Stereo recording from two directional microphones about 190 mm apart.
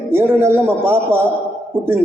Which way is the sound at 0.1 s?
10° right (ahead or behind).